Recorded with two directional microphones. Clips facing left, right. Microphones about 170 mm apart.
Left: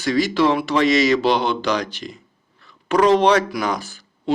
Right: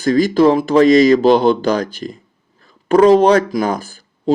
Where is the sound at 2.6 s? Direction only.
40° right (ahead or behind).